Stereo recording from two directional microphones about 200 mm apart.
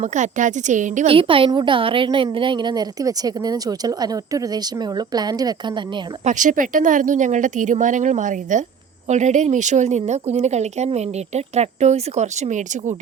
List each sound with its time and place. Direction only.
0.0 s a woman's voice: 35° right (ahead or behind); by 5.8 s 20° right (ahead or behind)
6.2 s speech: 40° right (ahead or behind)